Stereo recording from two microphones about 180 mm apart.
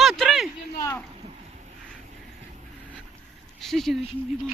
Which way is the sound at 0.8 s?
15° left (ahead or behind).